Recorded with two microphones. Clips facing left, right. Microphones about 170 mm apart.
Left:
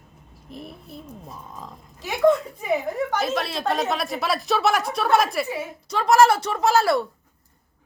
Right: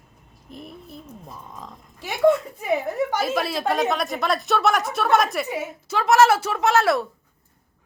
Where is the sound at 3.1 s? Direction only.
5° right (ahead or behind).